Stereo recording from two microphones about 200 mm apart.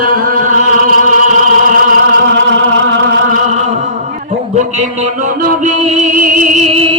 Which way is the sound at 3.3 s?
35° right (ahead or behind).